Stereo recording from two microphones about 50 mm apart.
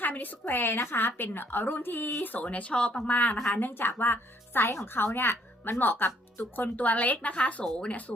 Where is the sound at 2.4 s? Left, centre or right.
Left.